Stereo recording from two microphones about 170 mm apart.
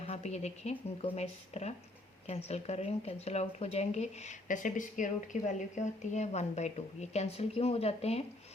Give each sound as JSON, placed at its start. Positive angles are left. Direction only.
{"t": 0.0, "sound": "speech", "side_deg": 40}